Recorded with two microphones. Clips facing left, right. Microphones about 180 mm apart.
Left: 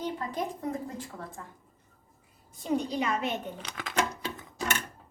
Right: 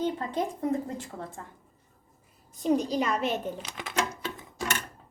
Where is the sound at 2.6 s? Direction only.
40° right (ahead or behind).